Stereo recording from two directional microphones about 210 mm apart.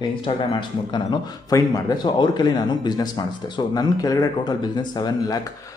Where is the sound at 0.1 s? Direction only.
25° left (ahead or behind).